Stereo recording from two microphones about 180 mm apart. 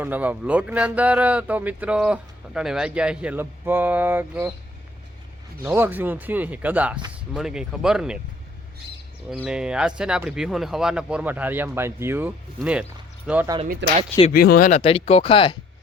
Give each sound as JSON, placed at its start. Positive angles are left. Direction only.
{"t": 0.0, "sound": "speech", "side_deg": -10}
{"t": 5.6, "sound": "speech", "side_deg": -10}
{"t": 9.3, "sound": "speech", "side_deg": -5}
{"t": 13.8, "sound": "speech", "side_deg": -80}
{"t": 14.3, "sound": "speech", "side_deg": 60}
{"t": 14.7, "sound": "speech", "side_deg": 30}